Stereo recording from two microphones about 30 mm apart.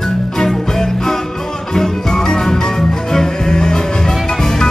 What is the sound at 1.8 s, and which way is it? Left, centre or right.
Music, centre.